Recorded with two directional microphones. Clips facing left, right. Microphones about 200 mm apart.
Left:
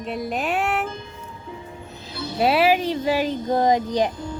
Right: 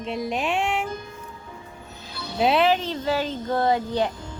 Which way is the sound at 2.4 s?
5° left (ahead or behind).